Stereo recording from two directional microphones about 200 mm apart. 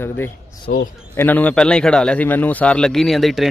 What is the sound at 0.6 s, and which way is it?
Speech, 50° left (ahead or behind).